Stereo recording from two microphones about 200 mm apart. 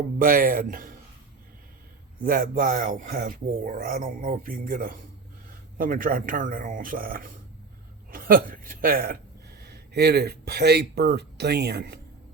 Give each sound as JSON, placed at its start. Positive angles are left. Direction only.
{"t": 0.2, "sound": "speech", "side_deg": -45}
{"t": 2.2, "sound": "a woman's voice", "side_deg": -45}